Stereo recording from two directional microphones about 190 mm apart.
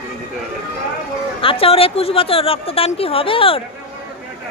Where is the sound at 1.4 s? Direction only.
30° left (ahead or behind).